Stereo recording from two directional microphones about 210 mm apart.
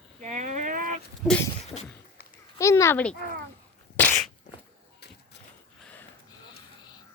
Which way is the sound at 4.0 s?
5° left (ahead or behind).